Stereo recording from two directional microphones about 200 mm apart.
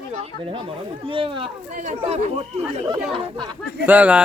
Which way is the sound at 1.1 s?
25° right (ahead or behind).